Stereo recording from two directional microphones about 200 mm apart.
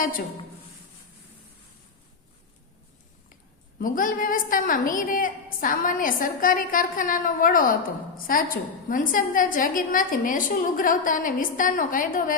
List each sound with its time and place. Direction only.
3.8 s a woman's voice: 45° left (ahead or behind)